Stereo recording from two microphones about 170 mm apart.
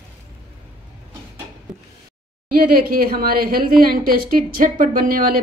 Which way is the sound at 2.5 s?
60° right (ahead or behind).